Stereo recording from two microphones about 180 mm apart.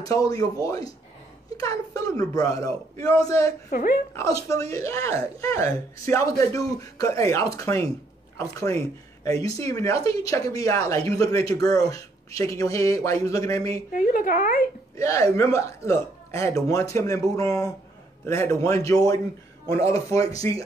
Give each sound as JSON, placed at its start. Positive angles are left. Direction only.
{"t": 0.0, "sound": "speech", "side_deg": 20}
{"t": 3.7, "sound": "speech", "side_deg": 55}
{"t": 4.1, "sound": "speech", "side_deg": 15}
{"t": 13.9, "sound": "speech", "side_deg": 55}
{"t": 15.0, "sound": "speech", "side_deg": 15}